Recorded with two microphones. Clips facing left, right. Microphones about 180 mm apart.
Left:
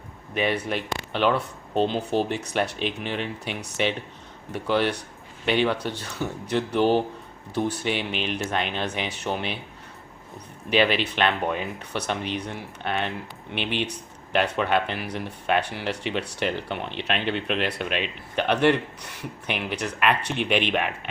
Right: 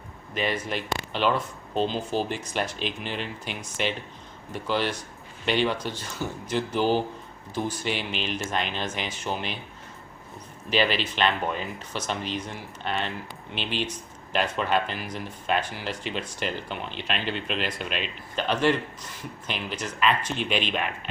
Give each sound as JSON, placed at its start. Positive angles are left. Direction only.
{"t": 0.3, "sound": "speech", "side_deg": 60}
{"t": 10.7, "sound": "speech", "side_deg": 60}